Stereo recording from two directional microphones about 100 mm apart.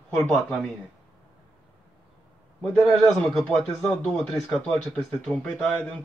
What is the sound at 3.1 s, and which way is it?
Speech, 5° left (ahead or behind).